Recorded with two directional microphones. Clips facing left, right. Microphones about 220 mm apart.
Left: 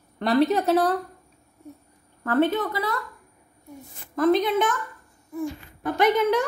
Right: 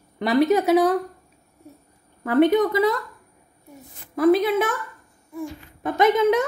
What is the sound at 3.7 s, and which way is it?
A woman's voice, 10° right (ahead or behind).